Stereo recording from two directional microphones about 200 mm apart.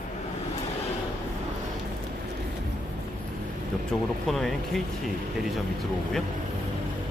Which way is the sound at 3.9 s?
Centre (ahead or behind).